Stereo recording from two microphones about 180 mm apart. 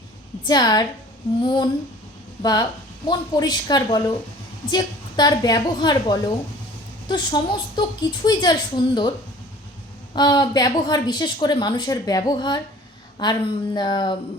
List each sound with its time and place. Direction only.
0.4 s a woman's voice: 20° left (ahead or behind)
10.2 s a woman's voice: 25° left (ahead or behind)